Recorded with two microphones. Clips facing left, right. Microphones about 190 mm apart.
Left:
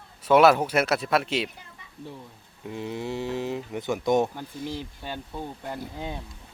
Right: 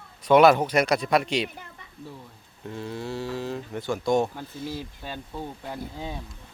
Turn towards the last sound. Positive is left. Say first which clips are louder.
# left 1 dB
turn(degrees=5)  # may be behind; listen again after turning